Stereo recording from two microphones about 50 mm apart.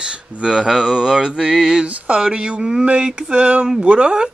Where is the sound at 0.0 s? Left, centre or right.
Centre.